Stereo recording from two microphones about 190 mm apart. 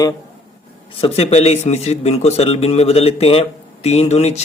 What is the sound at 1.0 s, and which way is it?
Speech, 30° left (ahead or behind).